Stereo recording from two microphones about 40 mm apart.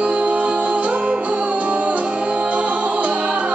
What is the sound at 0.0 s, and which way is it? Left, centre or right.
Music, right.